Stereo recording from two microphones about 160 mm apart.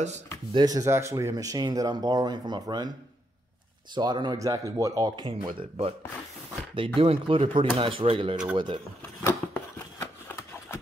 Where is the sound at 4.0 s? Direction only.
25° right (ahead or behind).